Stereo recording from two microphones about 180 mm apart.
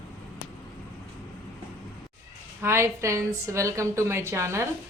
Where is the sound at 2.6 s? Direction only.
15° right (ahead or behind).